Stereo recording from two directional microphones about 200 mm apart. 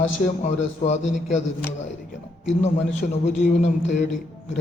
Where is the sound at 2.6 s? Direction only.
35° left (ahead or behind).